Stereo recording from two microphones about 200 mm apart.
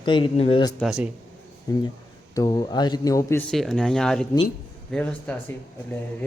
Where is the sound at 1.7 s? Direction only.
20° left (ahead or behind).